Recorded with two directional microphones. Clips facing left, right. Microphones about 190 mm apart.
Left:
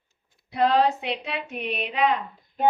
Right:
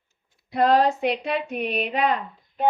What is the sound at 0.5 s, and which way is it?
Speech, 45° right (ahead or behind).